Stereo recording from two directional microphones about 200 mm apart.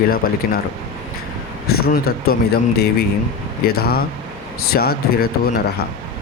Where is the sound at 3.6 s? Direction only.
50° left (ahead or behind).